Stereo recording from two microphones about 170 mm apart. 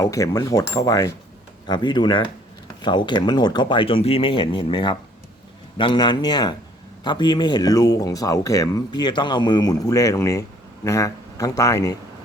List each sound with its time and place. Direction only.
0.0 s speech: 20° left (ahead or behind)